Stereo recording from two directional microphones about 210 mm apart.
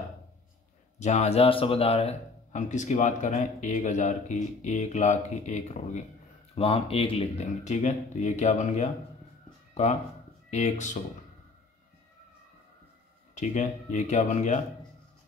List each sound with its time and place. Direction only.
0.9 s speech: 35° left (ahead or behind)
10.5 s speech: 35° left (ahead or behind)
13.3 s speech: 35° left (ahead or behind)